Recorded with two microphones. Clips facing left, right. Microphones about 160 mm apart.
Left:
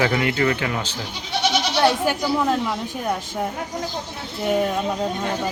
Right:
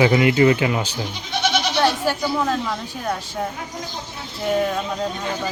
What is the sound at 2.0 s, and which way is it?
A woman's voice, 15° left (ahead or behind).